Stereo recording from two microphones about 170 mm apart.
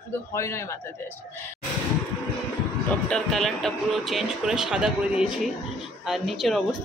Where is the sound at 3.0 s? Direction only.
Centre (ahead or behind).